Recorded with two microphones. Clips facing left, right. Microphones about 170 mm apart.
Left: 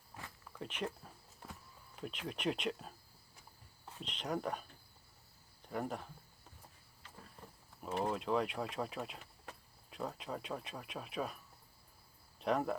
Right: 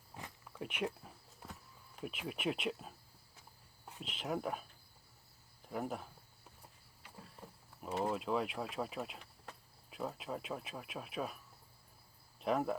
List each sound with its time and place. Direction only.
0.2 s cricket: 10° right (ahead or behind)
2.0 s speech: 5° right (ahead or behind)
4.0 s speech: 5° right (ahead or behind)
5.6 s speech: centre (ahead or behind)
8.0 s speech: 5° right (ahead or behind)
12.4 s speech: centre (ahead or behind)